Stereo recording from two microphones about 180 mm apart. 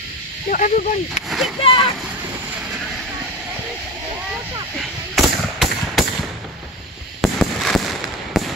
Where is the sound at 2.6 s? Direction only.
5° right (ahead or behind).